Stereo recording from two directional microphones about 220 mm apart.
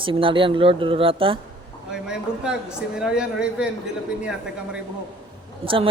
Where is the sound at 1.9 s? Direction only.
5° right (ahead or behind).